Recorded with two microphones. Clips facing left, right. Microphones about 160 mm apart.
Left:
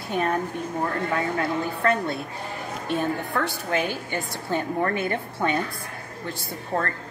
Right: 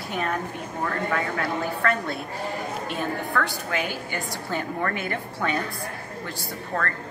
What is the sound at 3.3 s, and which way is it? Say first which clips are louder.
Speech: left 1 dB; 25° left (ahead or behind).